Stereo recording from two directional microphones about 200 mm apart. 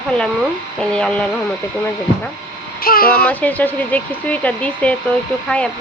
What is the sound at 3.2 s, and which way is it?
Speech, 10° left (ahead or behind).